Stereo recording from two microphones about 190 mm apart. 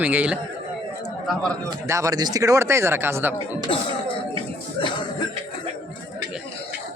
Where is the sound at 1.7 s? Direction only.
15° right (ahead or behind).